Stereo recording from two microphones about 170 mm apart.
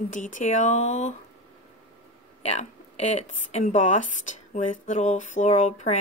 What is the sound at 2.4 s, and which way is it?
Speech, 40° left (ahead or behind).